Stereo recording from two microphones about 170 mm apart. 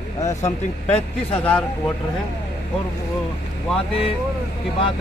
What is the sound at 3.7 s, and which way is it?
Speech, 35° left (ahead or behind).